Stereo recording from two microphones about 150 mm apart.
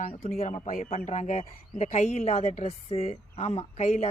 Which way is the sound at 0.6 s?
60° left (ahead or behind).